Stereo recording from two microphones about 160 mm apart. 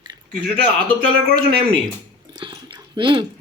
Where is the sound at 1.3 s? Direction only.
35° right (ahead or behind).